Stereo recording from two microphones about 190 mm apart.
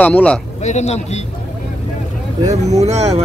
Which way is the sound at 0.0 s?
5° left (ahead or behind).